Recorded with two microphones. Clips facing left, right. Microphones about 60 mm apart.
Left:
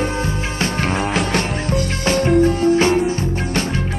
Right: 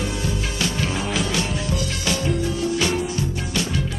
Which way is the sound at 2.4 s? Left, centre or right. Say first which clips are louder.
Left 8 dB; left.